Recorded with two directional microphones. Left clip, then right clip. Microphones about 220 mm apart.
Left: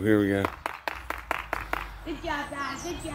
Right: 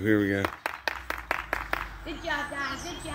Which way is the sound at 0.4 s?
30° right (ahead or behind).